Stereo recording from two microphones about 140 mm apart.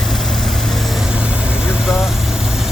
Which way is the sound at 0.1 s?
Centre (ahead or behind).